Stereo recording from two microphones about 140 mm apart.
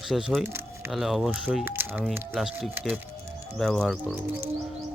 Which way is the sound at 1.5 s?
15° right (ahead or behind).